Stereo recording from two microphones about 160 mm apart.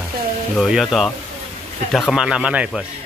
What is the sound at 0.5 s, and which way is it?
Speech, centre (ahead or behind).